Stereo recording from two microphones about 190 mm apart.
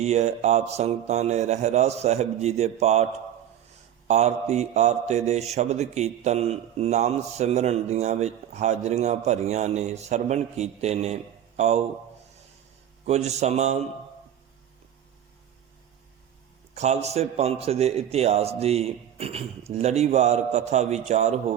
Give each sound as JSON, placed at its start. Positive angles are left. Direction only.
{"t": 0.0, "sound": "a man's voice", "side_deg": -35}
{"t": 4.1, "sound": "a man's voice", "side_deg": -35}
{"t": 13.1, "sound": "a man's voice", "side_deg": -35}
{"t": 16.7, "sound": "a man's voice", "side_deg": -35}